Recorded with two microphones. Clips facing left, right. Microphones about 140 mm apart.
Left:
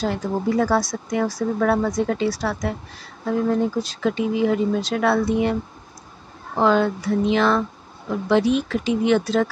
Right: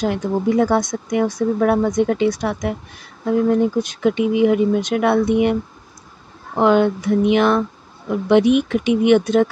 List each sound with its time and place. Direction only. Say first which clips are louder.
0.0 s speech: right 4 dB; 15° right (ahead or behind)